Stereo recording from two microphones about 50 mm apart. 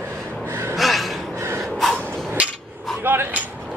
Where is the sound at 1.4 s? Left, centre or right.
Right.